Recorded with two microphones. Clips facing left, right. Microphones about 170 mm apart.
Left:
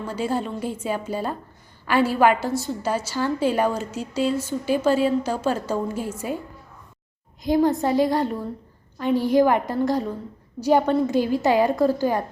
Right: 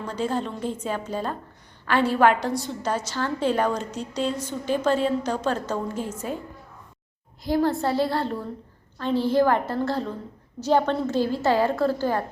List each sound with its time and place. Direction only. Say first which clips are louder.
0.0 s a woman's voice: left 1 dB; 10° left (ahead or behind)
7.4 s a woman's voice: left 3 dB; 15° left (ahead or behind)